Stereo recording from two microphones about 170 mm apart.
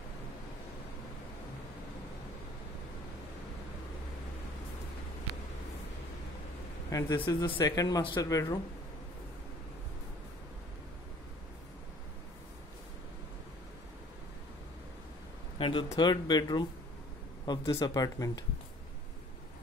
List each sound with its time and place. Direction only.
6.9 s a sound: 20° left (ahead or behind)
7.2 s speech: 25° left (ahead or behind)
15.6 s speech: 30° left (ahead or behind)